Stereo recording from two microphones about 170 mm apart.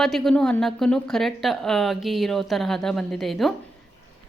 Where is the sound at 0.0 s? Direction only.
Centre (ahead or behind).